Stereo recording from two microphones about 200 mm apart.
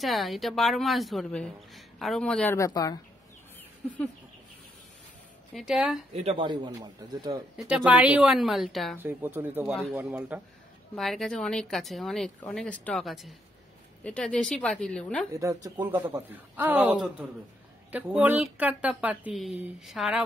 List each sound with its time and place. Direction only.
0.0 s a woman's voice: centre (ahead or behind)
2.5 s speech: 15° left (ahead or behind)
3.8 s speech: 5° left (ahead or behind)
5.5 s a woman's voice: centre (ahead or behind)
6.1 s speech: 30° right (ahead or behind)
7.5 s a woman's voice: 5° right (ahead or behind)
15.3 s a woman's voice: 15° right (ahead or behind)